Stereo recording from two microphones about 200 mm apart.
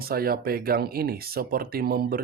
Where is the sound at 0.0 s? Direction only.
50° right (ahead or behind).